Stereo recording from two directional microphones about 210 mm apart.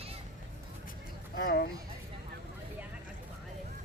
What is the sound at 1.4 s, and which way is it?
Speech, 45° left (ahead or behind).